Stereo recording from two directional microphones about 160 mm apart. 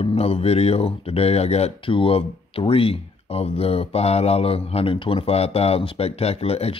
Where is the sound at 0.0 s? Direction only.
35° left (ahead or behind).